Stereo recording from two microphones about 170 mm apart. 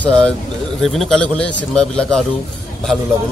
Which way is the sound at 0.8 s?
Centre (ahead or behind).